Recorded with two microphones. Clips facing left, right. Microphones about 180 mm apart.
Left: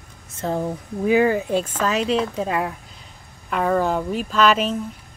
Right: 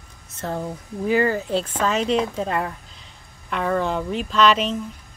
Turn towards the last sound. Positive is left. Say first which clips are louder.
# even
turn(degrees=5)  # may be behind; listen again after turning